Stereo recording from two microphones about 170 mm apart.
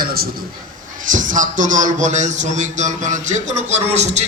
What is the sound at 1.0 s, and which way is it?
A man's voice, 50° right (ahead or behind).